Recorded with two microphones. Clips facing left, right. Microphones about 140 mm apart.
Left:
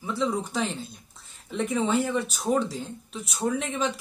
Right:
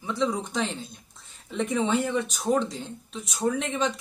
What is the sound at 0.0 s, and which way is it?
Speech, 5° left (ahead or behind).